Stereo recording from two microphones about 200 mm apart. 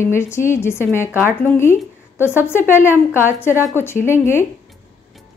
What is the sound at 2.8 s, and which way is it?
Speech, 10° left (ahead or behind).